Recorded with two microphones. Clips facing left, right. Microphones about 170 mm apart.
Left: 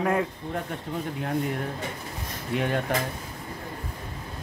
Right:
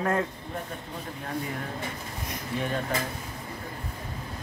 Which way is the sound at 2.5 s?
70° left (ahead or behind).